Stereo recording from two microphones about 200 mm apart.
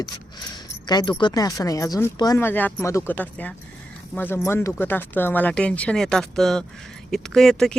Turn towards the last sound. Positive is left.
turn(degrees=0)  # may be behind; listen again after turning